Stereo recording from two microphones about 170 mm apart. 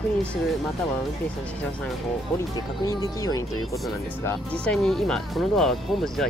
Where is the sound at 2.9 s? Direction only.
20° left (ahead or behind).